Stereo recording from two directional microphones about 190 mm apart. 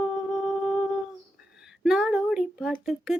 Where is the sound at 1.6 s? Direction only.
Centre (ahead or behind).